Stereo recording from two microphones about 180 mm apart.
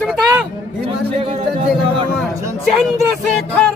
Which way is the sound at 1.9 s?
20° right (ahead or behind).